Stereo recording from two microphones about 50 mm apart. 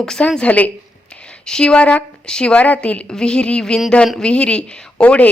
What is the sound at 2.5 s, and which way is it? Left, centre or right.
Speech, left.